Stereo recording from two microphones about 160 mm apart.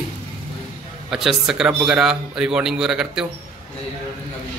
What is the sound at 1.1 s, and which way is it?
Speech, 5° right (ahead or behind).